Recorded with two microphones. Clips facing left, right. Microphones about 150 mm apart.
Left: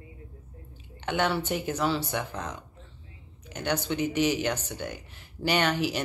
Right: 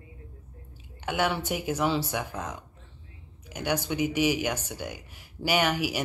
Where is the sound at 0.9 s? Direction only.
10° right (ahead or behind).